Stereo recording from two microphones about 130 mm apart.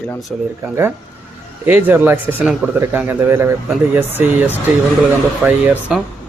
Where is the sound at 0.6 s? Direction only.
20° right (ahead or behind).